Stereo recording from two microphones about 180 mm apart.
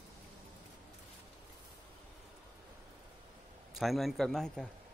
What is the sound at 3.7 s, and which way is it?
Speech, centre (ahead or behind).